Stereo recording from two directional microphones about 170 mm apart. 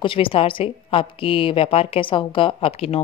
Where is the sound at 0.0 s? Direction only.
30° left (ahead or behind).